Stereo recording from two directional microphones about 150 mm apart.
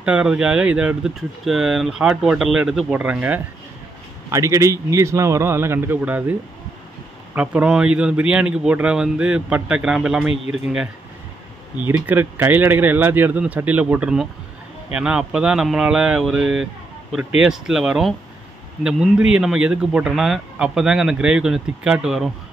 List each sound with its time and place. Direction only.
0.0 s a man's voice: 5° right (ahead or behind)
7.3 s speech: 10° right (ahead or behind)